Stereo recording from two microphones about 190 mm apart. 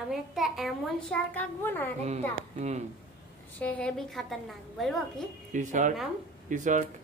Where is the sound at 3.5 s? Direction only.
5° left (ahead or behind).